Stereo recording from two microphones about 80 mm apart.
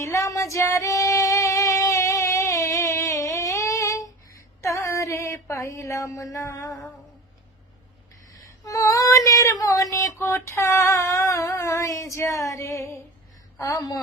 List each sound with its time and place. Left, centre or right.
0.0 s female singing: left
8.6 s female singing: left
13.6 s a woman's voice: left